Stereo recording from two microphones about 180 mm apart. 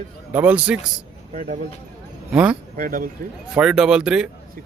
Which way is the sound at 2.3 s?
5° right (ahead or behind).